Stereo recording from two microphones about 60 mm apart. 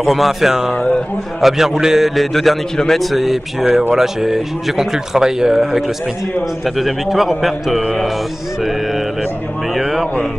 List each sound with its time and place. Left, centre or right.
0.0 s a man's voice: centre
9.8 s a man's voice: centre